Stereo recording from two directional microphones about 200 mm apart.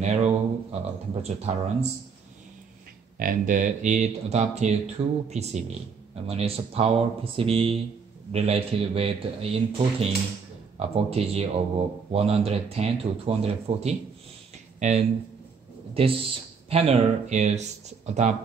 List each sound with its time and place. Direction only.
0.0 s speech: 35° right (ahead or behind)
3.2 s speech: 45° right (ahead or behind)